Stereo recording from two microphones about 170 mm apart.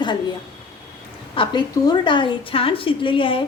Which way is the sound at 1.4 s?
25° left (ahead or behind).